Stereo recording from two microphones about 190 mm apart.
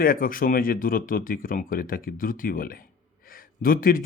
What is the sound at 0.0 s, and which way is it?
A man's voice, 50° left (ahead or behind).